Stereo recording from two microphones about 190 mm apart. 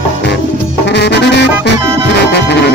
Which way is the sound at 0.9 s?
65° left (ahead or behind).